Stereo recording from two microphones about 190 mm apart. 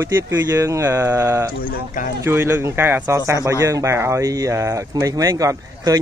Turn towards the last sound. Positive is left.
turn(degrees=-20)  # may be behind; listen again after turning